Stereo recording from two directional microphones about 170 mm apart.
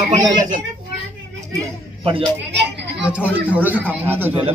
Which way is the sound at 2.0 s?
30° right (ahead or behind).